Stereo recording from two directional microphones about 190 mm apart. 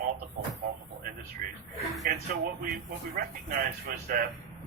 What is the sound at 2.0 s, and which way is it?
Speech, 50° right (ahead or behind).